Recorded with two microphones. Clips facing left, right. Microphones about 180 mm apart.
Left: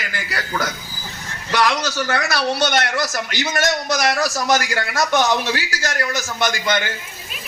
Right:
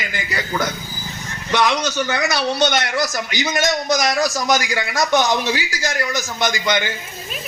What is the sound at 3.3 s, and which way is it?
Speech, 15° right (ahead or behind).